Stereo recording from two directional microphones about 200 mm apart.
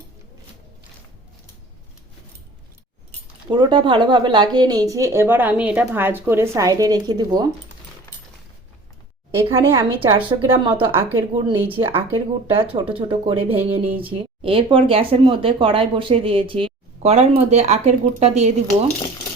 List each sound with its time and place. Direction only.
3.5 s speech: 20° right (ahead or behind)
9.4 s speech: 25° right (ahead or behind)